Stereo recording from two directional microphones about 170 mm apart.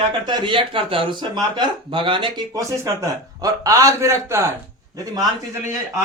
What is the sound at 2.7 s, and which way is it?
A man's voice, 15° right (ahead or behind).